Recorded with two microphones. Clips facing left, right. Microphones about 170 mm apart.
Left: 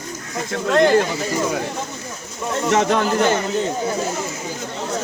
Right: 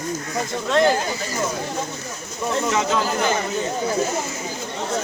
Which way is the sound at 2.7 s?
60° left (ahead or behind).